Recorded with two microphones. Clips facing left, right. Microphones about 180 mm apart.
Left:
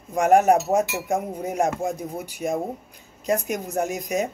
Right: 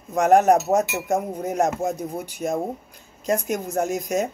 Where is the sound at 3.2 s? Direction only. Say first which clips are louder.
Right 1 dB; 10° left (ahead or behind).